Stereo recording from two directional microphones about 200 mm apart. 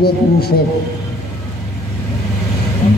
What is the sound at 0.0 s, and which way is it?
Speech, 50° left (ahead or behind).